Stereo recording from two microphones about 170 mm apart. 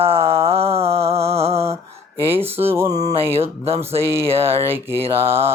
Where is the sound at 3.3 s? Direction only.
35° right (ahead or behind).